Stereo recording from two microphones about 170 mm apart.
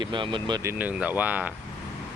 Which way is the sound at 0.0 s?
30° right (ahead or behind).